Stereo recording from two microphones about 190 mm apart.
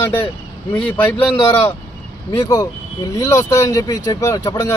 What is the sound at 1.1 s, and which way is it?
Speech, 25° left (ahead or behind).